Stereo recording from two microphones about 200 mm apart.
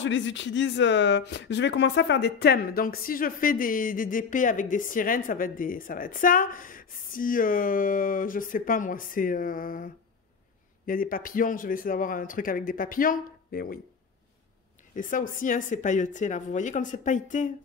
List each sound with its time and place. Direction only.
0.0 s speech: 65° left (ahead or behind); by 9.8 s 45° left (ahead or behind)
10.9 s speech: 45° left (ahead or behind)
15.0 s speech: 40° left (ahead or behind)